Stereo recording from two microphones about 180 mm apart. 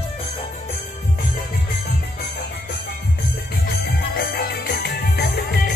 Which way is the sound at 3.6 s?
55° left (ahead or behind).